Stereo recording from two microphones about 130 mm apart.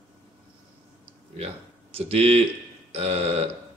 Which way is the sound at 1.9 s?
50° right (ahead or behind).